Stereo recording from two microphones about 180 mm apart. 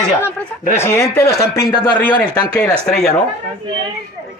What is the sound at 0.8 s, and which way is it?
Speech, 15° left (ahead or behind).